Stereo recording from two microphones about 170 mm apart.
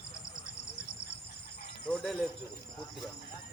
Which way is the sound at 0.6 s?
90° left.